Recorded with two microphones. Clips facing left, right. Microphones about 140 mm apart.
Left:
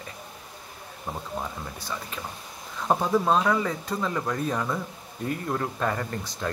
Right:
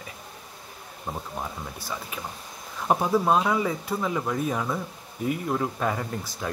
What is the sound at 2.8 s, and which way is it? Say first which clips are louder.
Speech: right 1 dB; 10° right (ahead or behind).